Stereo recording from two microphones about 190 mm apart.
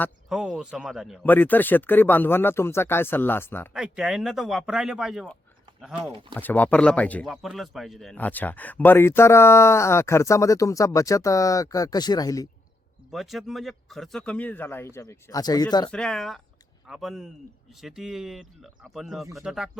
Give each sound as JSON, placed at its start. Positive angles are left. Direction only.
{"t": 0.3, "sound": "speech", "side_deg": 0}
{"t": 1.2, "sound": "speech", "side_deg": 10}
{"t": 3.8, "sound": "speech", "side_deg": -5}
{"t": 6.0, "sound": "speech", "side_deg": -25}
{"t": 6.3, "sound": "speech", "side_deg": 10}
{"t": 13.1, "sound": "speech", "side_deg": 0}
{"t": 15.9, "sound": "speech", "side_deg": 5}